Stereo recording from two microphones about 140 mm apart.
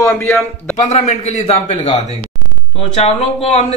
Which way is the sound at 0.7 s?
55° left (ahead or behind).